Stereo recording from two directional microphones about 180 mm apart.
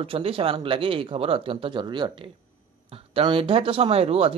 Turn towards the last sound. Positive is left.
turn(degrees=-35)  # may be behind; listen again after turning